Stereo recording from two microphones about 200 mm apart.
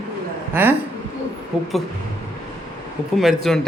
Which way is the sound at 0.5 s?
10° right (ahead or behind).